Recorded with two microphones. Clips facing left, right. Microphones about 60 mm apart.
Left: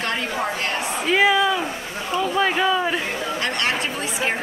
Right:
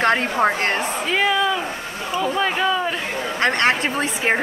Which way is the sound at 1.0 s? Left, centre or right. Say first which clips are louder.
Left 3 dB; centre.